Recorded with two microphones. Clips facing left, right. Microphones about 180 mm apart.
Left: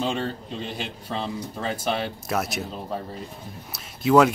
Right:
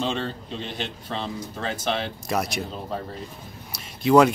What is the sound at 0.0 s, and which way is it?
Speech, 5° left (ahead or behind).